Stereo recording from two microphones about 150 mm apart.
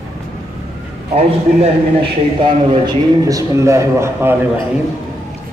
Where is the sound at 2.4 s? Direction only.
30° right (ahead or behind).